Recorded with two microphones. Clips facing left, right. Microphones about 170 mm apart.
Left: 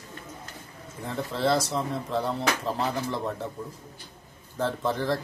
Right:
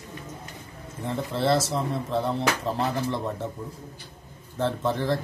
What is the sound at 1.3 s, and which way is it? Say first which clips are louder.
Speech: right 1 dB; centre (ahead or behind).